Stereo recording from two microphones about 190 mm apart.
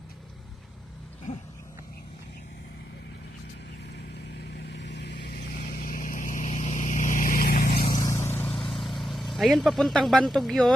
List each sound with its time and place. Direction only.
4.5 s vehicle: 65° left (ahead or behind)
5.5 s vehicle: 45° left (ahead or behind)
7.9 s vehicle: 20° left (ahead or behind); by 10.8 s centre (ahead or behind)